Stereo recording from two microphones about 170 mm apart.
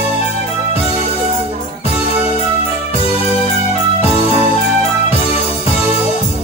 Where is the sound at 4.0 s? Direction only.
35° left (ahead or behind).